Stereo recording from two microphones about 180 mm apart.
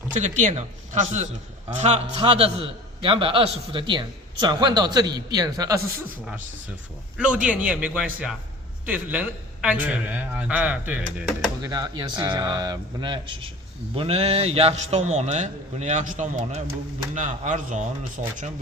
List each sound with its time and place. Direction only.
0.1 s a man's voice: 40° right (ahead or behind)
1.7 s a man's voice: 40° right (ahead or behind); by 5.8 s 20° right (ahead or behind)
7.2 s speech: 5° right (ahead or behind)
11.6 s a man's voice: 20° right (ahead or behind); by 17.8 s 45° right (ahead or behind)